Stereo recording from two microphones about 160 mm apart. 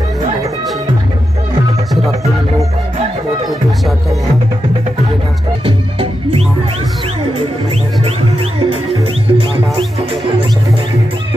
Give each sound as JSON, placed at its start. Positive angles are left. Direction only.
{"t": 5.7, "sound": "music", "side_deg": -35}
{"t": 9.3, "sound": "music", "side_deg": -35}